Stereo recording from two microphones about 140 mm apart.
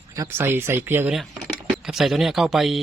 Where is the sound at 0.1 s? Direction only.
20° right (ahead or behind).